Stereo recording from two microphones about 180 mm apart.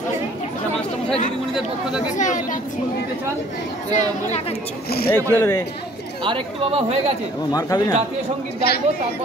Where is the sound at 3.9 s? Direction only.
40° left (ahead or behind).